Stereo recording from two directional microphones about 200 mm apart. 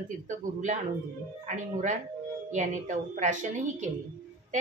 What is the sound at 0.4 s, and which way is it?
A woman's voice, 40° right (ahead or behind).